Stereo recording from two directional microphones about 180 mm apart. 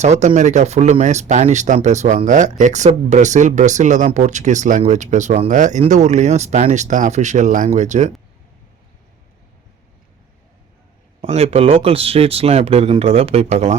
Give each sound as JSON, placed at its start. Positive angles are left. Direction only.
{"t": 0.0, "sound": "speech", "side_deg": -40}
{"t": 11.2, "sound": "speech", "side_deg": -35}